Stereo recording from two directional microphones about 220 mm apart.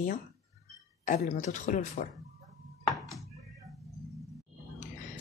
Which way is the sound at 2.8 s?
Centre (ahead or behind).